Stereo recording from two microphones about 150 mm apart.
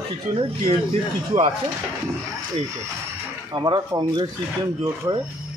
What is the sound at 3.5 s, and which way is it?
Speech, 30° right (ahead or behind).